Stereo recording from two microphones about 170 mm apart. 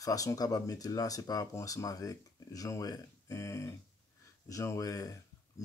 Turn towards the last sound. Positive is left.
turn(degrees=20)  # may be behind; listen again after turning